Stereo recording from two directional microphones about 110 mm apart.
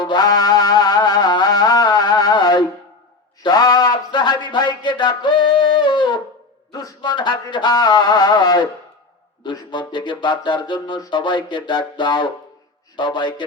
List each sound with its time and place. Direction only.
0.0 s music: 40° left (ahead or behind)
3.4 s a sound: 35° left (ahead or behind)
6.7 s speech: 35° left (ahead or behind)